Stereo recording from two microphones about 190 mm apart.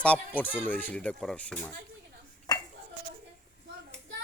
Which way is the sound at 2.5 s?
20° left (ahead or behind).